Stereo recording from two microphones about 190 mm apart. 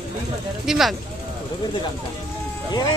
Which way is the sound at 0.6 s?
Centre (ahead or behind).